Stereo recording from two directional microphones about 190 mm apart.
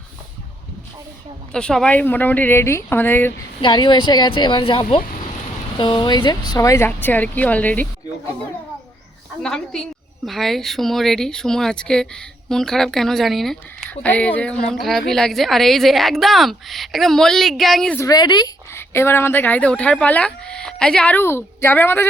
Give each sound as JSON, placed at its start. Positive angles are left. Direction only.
{"t": 1.5, "sound": "speech", "side_deg": 5}
{"t": 3.6, "sound": "a woman's voice", "side_deg": 25}
{"t": 9.4, "sound": "speech", "side_deg": 5}
{"t": 18.0, "sound": "speech", "side_deg": 20}